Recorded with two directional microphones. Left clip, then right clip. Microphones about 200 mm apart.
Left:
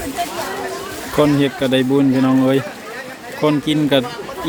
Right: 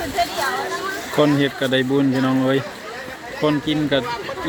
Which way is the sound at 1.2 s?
10° left (ahead or behind).